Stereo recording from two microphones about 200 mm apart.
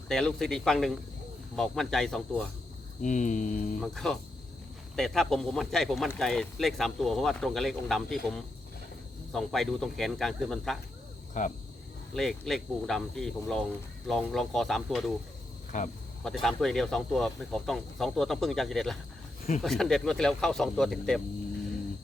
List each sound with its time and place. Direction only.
0.1 s speech: centre (ahead or behind)
3.0 s cricket: 40° left (ahead or behind)
3.8 s speech: centre (ahead or behind)
11.3 s cricket: 40° left (ahead or behind)
12.1 s speech: centre (ahead or behind)
15.7 s cricket: 40° left (ahead or behind)
16.2 s speech: centre (ahead or behind)